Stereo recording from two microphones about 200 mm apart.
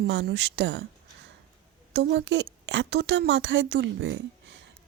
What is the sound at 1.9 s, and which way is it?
Speech, 60° right (ahead or behind).